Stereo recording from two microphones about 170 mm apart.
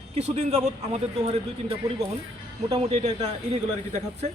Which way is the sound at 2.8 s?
40° right (ahead or behind).